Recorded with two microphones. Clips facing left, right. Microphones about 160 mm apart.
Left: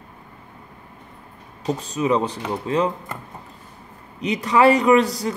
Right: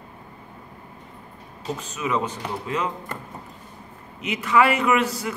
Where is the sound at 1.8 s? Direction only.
35° left (ahead or behind).